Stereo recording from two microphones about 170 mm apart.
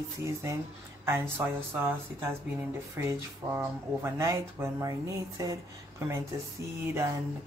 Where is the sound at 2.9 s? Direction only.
15° right (ahead or behind).